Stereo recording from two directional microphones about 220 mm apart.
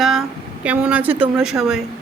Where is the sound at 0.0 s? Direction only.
Centre (ahead or behind).